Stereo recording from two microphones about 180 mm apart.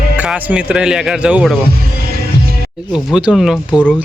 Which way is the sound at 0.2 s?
5° right (ahead or behind).